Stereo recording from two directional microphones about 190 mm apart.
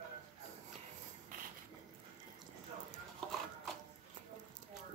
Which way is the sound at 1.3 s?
45° right (ahead or behind).